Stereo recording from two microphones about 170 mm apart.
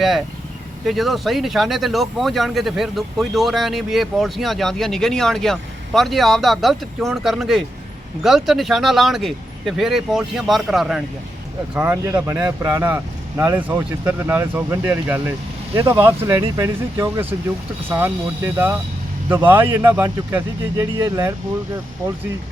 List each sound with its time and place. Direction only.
0.9 s speech: centre (ahead or behind)
11.7 s speech: 15° right (ahead or behind)